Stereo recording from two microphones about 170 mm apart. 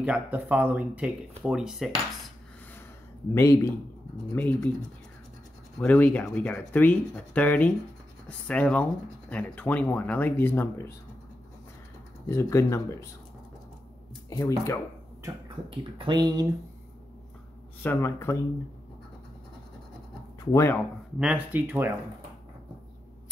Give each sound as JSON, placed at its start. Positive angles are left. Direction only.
{"t": 0.0, "sound": "speech", "side_deg": -10}
{"t": 3.3, "sound": "speech", "side_deg": 15}
{"t": 5.8, "sound": "speech", "side_deg": 10}
{"t": 12.3, "sound": "speech", "side_deg": 20}
{"t": 14.3, "sound": "speech", "side_deg": 20}
{"t": 16.0, "sound": "speech", "side_deg": -25}
{"t": 17.8, "sound": "speech", "side_deg": 15}
{"t": 20.3, "sound": "speech", "side_deg": 15}
{"t": 21.2, "sound": "speech", "side_deg": -10}